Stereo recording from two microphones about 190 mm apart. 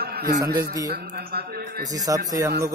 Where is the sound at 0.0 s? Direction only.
55° right (ahead or behind).